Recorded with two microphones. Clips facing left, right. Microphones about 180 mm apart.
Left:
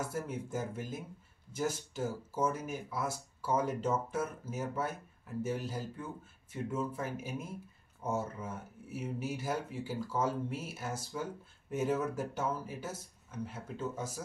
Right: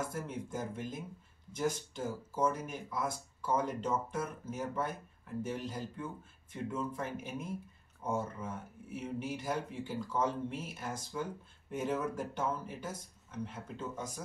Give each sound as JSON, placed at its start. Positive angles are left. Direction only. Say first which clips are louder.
{"t": 0.0, "sound": "speech", "louder": "left 1 dB", "side_deg": 5}